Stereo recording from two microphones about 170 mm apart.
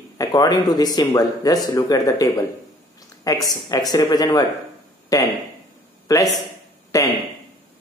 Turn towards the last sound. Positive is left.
turn(degrees=20)  # may be behind; listen again after turning